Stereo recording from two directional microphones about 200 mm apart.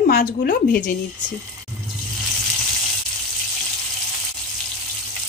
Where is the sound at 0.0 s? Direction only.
50° left (ahead or behind).